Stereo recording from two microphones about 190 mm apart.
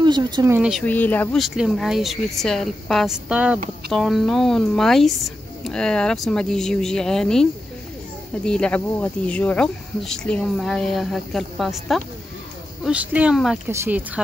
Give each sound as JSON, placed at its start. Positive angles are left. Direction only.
{"t": 0.0, "sound": "speech", "side_deg": -25}
{"t": 0.6, "sound": "speech", "side_deg": -5}
{"t": 0.8, "sound": "speech", "side_deg": 10}
{"t": 8.5, "sound": "speech", "side_deg": 5}